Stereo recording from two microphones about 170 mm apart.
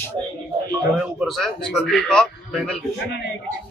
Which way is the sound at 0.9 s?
5° right (ahead or behind).